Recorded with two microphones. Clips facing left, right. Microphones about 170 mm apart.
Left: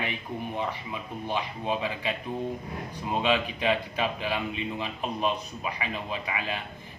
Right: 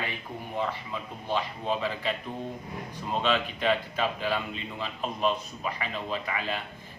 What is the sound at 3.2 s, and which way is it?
A man's voice, 15° left (ahead or behind).